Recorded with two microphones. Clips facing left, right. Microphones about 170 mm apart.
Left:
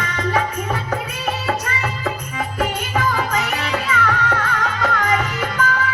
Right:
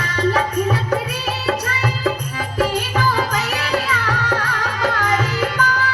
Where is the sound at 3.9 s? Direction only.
35° right (ahead or behind).